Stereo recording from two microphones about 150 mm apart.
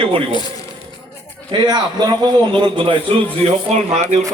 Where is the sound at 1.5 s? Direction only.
30° right (ahead or behind).